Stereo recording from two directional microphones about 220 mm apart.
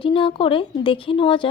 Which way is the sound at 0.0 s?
25° left (ahead or behind).